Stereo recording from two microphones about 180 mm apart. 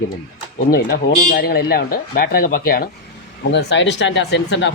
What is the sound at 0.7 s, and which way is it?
Speech, 60° left (ahead or behind).